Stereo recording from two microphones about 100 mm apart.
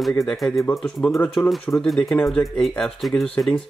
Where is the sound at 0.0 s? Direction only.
Centre (ahead or behind).